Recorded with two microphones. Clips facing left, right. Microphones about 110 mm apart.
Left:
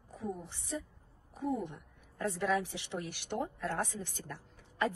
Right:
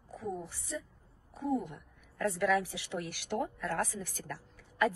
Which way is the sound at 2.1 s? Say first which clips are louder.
Right 3 dB; 20° left (ahead or behind).